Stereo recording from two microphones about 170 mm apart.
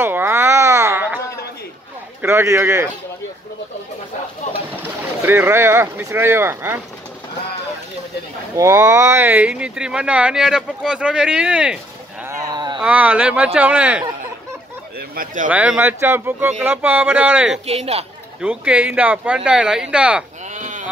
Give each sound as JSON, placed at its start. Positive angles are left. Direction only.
{"t": 0.0, "sound": "babbling", "side_deg": -15}
{"t": 2.2, "sound": "speech", "side_deg": -15}
{"t": 4.7, "sound": "speech", "side_deg": -10}
{"t": 8.5, "sound": "speech", "side_deg": -20}
{"t": 12.3, "sound": "livestock", "side_deg": -25}
{"t": 12.8, "sound": "speech", "side_deg": -10}
{"t": 15.0, "sound": "speech", "side_deg": -55}
{"t": 15.5, "sound": "speech", "side_deg": -10}
{"t": 17.6, "sound": "a woman's voice", "side_deg": -35}
{"t": 18.4, "sound": "speech", "side_deg": -5}
{"t": 20.5, "sound": "sheep", "side_deg": -45}